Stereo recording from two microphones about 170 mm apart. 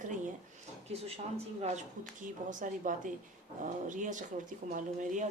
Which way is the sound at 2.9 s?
50° right (ahead or behind).